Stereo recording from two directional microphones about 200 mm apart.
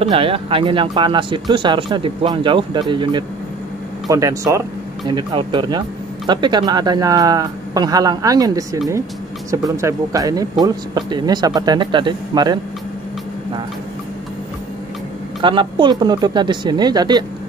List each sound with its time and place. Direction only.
0.0 s speech: 30° right (ahead or behind)
15.4 s speech: 25° right (ahead or behind)